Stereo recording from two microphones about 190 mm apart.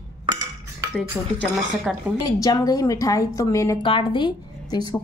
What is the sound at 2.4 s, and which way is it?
A woman's voice, 20° left (ahead or behind).